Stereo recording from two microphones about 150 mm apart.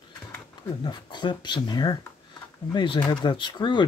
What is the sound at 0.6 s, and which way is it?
Speech, 30° left (ahead or behind).